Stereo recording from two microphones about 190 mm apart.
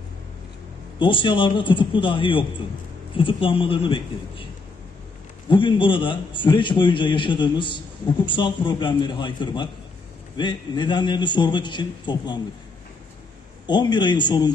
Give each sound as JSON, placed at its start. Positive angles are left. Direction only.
{"t": 0.9, "sound": "a man's voice", "side_deg": 25}
{"t": 5.5, "sound": "a man's voice", "side_deg": 25}
{"t": 13.7, "sound": "a man's voice", "side_deg": 25}